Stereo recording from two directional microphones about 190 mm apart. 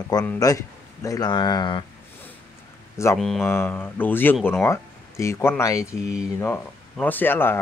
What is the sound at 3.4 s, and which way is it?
Speech, 10° left (ahead or behind).